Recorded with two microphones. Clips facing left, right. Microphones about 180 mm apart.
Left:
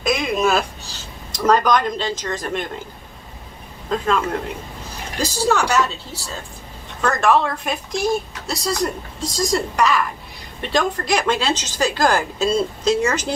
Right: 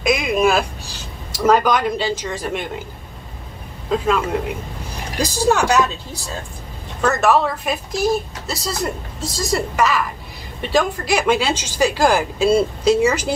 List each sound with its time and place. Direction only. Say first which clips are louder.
0.0 s a sound: right 2 dB; 10° right (ahead or behind)
3.9 s a woman's voice: right 2 dB; 5° right (ahead or behind)
7.0 s a woman's voice: right 1 dB; 5° right (ahead or behind)